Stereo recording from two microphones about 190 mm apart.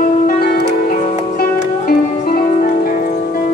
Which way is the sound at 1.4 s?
50° left (ahead or behind).